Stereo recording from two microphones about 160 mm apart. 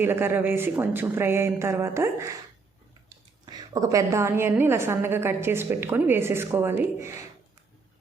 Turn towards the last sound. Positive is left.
turn(degrees=-15)  # may be behind; listen again after turning